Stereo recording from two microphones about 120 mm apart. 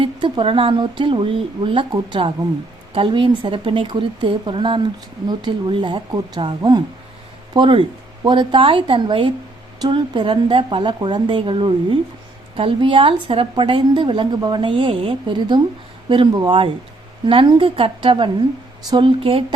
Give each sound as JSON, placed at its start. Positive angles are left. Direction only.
{"t": 0.0, "sound": "a woman's voice", "side_deg": -45}